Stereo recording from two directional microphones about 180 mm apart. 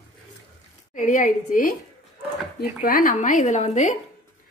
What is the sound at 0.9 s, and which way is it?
Speech, 45° left (ahead or behind).